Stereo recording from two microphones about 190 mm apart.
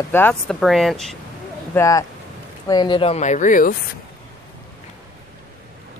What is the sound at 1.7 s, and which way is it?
Speech, 15° left (ahead or behind).